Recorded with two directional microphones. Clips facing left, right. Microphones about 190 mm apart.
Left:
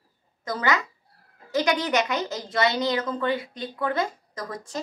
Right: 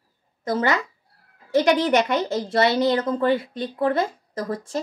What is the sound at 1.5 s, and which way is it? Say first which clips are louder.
Speech: right 5 dB; 50° right (ahead or behind).